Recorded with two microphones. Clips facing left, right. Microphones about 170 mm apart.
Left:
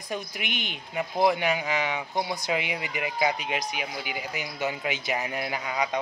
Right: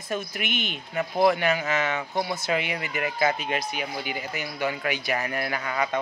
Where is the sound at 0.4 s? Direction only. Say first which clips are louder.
Right 4 dB; 15° left (ahead or behind).